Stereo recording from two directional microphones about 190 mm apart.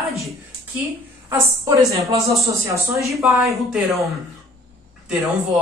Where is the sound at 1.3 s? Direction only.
20° right (ahead or behind).